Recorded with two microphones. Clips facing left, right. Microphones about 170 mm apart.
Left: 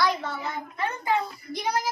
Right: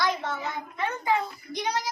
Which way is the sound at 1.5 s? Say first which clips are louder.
Even; 20° right (ahead or behind).